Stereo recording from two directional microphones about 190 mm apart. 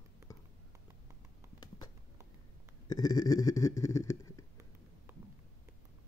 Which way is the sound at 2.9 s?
20° left (ahead or behind).